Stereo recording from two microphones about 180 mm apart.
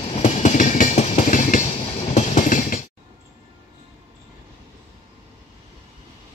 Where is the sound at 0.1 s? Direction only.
40° left (ahead or behind).